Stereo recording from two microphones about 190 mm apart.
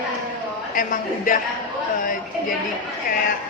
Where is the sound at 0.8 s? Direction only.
45° left (ahead or behind).